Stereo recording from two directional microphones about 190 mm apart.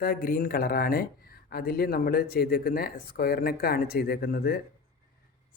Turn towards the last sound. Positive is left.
turn(degrees=50)  # may be behind; listen again after turning